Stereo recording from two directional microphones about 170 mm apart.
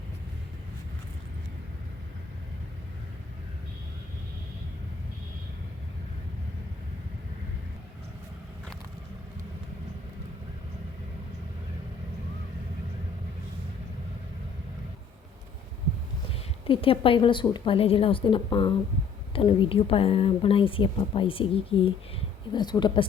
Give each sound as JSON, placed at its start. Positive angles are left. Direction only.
{"t": 16.6, "sound": "a woman's voice", "side_deg": 30}